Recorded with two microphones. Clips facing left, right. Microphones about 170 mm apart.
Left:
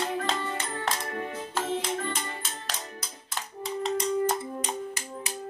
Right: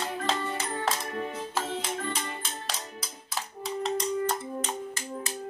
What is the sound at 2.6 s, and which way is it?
Music, centre (ahead or behind).